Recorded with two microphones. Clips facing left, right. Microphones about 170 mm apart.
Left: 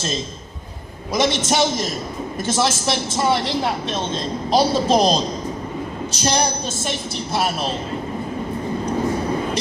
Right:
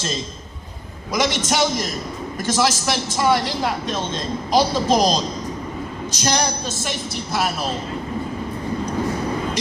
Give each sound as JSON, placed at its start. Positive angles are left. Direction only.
{"t": 1.1, "sound": "speech", "side_deg": 25}